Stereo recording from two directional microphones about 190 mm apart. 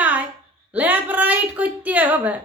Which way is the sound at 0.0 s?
10° right (ahead or behind).